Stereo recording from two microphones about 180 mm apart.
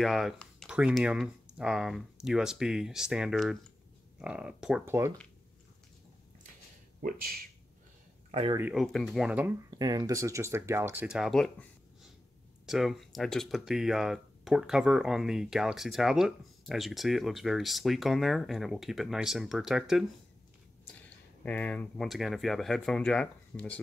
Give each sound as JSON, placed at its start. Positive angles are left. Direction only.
{"t": 0.0, "sound": "speech", "side_deg": 0}
{"t": 7.0, "sound": "speech", "side_deg": -55}
{"t": 8.3, "sound": "speech", "side_deg": -35}
{"t": 8.7, "sound": "speech", "side_deg": 0}
{"t": 9.7, "sound": "speech", "side_deg": -20}
{"t": 12.6, "sound": "speech", "side_deg": 0}
{"t": 21.4, "sound": "speech", "side_deg": 10}